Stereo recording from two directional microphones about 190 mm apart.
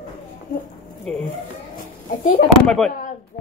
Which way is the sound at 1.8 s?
45° left (ahead or behind).